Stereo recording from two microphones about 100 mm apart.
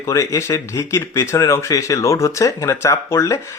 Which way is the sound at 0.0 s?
30° left (ahead or behind).